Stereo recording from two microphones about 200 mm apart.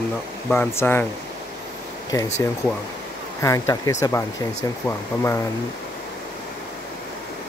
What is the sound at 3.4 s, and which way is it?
Speech, 15° left (ahead or behind).